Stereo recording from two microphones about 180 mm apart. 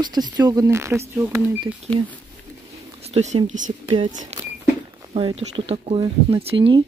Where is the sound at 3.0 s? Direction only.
35° right (ahead or behind).